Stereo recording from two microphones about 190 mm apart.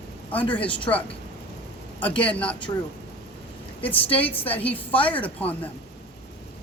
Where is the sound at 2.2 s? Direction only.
5° left (ahead or behind).